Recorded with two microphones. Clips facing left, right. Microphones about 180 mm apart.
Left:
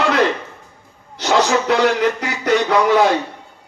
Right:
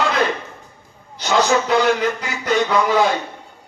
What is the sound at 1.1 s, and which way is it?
A man's voice, 75° left (ahead or behind).